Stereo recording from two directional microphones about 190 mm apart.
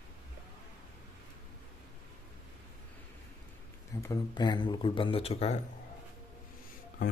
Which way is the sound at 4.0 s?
20° left (ahead or behind).